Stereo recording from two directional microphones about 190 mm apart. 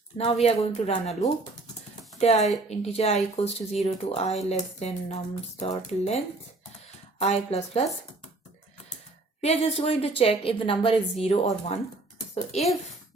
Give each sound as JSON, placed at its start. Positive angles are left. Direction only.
{"t": 0.4, "sound": "speech", "side_deg": 35}
{"t": 2.6, "sound": "speech", "side_deg": 35}
{"t": 7.2, "sound": "speech", "side_deg": 35}
{"t": 9.4, "sound": "a woman's voice", "side_deg": 35}